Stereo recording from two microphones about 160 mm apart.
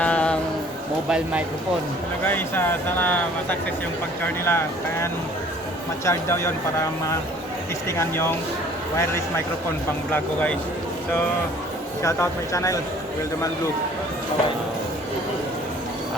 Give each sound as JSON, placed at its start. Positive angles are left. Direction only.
{"t": 0.0, "sound": "a sound", "side_deg": 10}
{"t": 1.1, "sound": "speech", "side_deg": -5}
{"t": 2.2, "sound": "speech", "side_deg": 10}
{"t": 6.1, "sound": "speech", "side_deg": 15}
{"t": 7.9, "sound": "speech", "side_deg": 15}
{"t": 12.0, "sound": "speech", "side_deg": 20}